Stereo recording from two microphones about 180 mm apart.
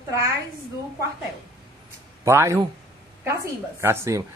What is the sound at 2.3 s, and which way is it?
Speech, 15° right (ahead or behind).